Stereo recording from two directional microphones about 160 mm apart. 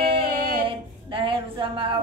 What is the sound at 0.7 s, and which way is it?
Music, 30° right (ahead or behind).